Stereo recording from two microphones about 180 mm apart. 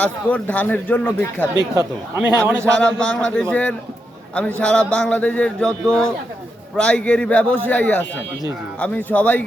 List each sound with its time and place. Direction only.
0.0 s a man's voice: 10° left (ahead or behind)
1.5 s speech: 15° right (ahead or behind)
2.6 s a man's voice: 5° left (ahead or behind)